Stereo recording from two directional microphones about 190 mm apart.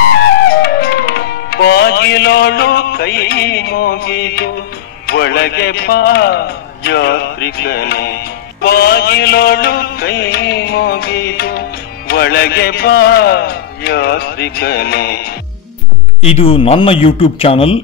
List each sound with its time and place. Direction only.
0.6 s music: 55° left (ahead or behind)
5.0 s a man's voice: 55° left (ahead or behind)
16.2 s speech: 30° left (ahead or behind)